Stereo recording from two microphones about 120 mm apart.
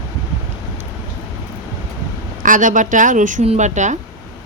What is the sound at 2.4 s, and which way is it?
A woman's voice, 90° right.